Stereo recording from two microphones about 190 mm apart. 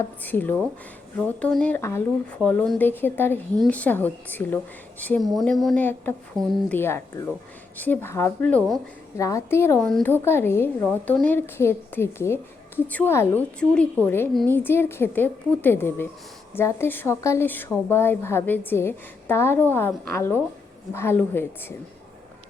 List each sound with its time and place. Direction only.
0.2 s a woman's voice: 10° left (ahead or behind)
6.3 s speech: 20° right (ahead or behind)
6.7 s a woman's voice: 10° left (ahead or behind)
9.1 s a woman's voice: 15° left (ahead or behind)